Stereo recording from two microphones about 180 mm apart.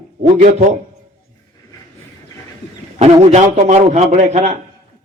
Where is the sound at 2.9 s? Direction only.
40° right (ahead or behind).